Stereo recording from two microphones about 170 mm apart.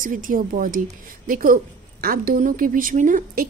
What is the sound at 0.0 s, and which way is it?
A woman's voice, 50° right (ahead or behind).